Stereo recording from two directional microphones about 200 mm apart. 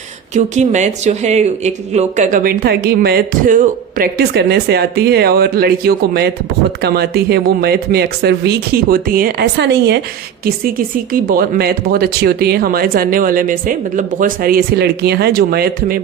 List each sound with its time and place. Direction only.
0.3 s speech: 35° right (ahead or behind); by 10.0 s 55° right (ahead or behind)
10.4 s speech: 45° right (ahead or behind)